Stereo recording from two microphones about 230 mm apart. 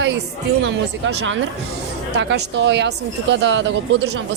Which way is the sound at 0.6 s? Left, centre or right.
Right.